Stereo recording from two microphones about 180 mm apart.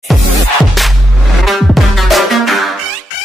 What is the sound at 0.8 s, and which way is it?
Music, centre (ahead or behind).